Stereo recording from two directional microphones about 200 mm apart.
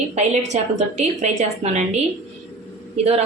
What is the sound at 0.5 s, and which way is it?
A woman's voice, 35° right (ahead or behind).